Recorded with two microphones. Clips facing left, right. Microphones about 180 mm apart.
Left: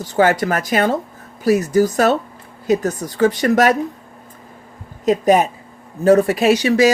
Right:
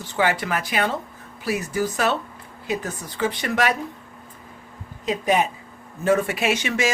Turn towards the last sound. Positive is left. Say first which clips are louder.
# left 9 dB
turn(degrees=35)  # may be behind; listen again after turning